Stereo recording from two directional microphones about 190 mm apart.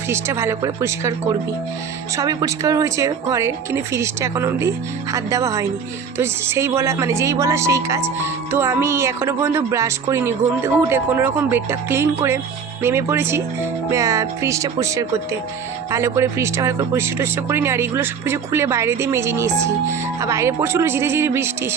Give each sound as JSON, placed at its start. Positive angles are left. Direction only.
{"t": 0.1, "sound": "speech", "side_deg": -15}
{"t": 2.1, "sound": "speech", "side_deg": -20}